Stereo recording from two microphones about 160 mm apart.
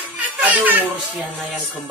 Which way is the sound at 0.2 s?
10° right (ahead or behind).